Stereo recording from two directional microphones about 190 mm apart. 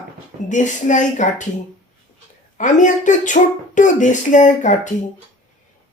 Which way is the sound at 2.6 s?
40° left (ahead or behind).